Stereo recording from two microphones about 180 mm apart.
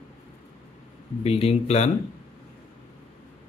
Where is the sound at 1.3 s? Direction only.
35° left (ahead or behind).